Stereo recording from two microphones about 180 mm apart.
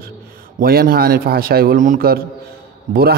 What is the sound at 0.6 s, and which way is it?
A man's voice, 55° right (ahead or behind).